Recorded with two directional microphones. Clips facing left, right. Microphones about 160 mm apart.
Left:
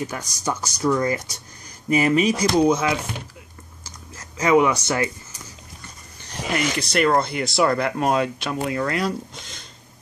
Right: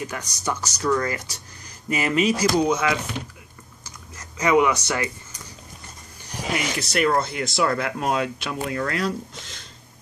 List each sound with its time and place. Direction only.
0.1 s speech: 10° left (ahead or behind)
1.9 s speech: 30° left (ahead or behind)
4.2 s speech: 30° left (ahead or behind)
6.2 s speech: 5° right (ahead or behind)